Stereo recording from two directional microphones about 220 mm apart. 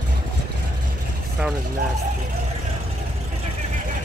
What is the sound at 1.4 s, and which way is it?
Speech, 5° right (ahead or behind).